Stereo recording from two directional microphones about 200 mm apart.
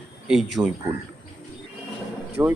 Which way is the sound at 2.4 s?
15° right (ahead or behind).